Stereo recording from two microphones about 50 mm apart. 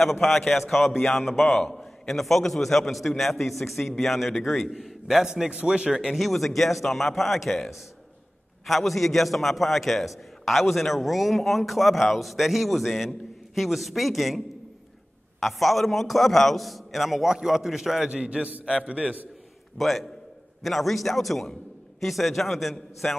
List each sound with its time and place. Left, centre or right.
0.2 s a man's voice: centre
5.9 s a man's voice: centre
15.4 s a man's voice: centre
18.1 s a man's voice: right
19.8 s a man's voice: centre